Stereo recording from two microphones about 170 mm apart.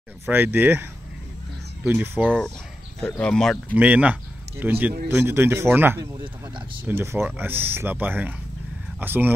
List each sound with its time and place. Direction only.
0.3 s speech: 10° right (ahead or behind)
1.9 s speech: 10° right (ahead or behind)
2.2 s speech: 5° left (ahead or behind)
3.7 s speech: 10° right (ahead or behind)
6.2 s speech: 30° right (ahead or behind)
6.8 s speech: 10° right (ahead or behind)